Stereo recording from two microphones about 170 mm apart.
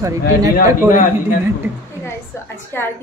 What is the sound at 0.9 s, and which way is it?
Speech, 50° left (ahead or behind).